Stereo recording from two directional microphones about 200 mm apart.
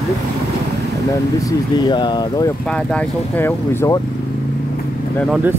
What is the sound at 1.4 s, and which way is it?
Speech, 20° left (ahead or behind).